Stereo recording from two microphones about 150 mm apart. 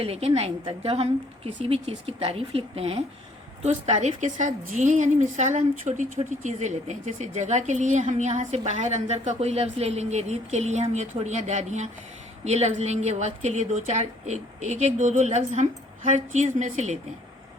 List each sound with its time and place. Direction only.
0.0 s a woman's voice: 40° right (ahead or behind)